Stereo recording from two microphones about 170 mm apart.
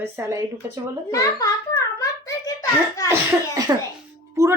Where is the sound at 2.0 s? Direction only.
20° left (ahead or behind).